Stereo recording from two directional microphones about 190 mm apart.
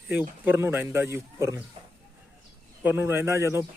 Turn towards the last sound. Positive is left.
turn(degrees=-15)  # may be behind; listen again after turning